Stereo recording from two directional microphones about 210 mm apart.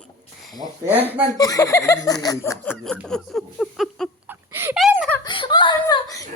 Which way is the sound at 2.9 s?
Centre (ahead or behind).